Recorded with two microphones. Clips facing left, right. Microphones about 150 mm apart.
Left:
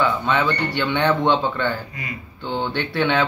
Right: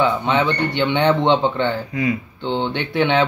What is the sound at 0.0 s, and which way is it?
Speech, 20° right (ahead or behind).